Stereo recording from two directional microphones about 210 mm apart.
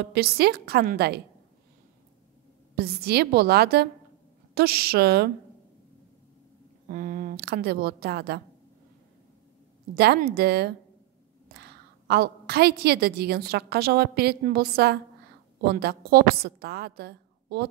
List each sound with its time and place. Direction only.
0.1 s a woman's voice: 50° right (ahead or behind)
2.7 s a woman's voice: 50° right (ahead or behind)
6.9 s a woman's voice: 40° right (ahead or behind)
9.9 s a woman's voice: 50° right (ahead or behind)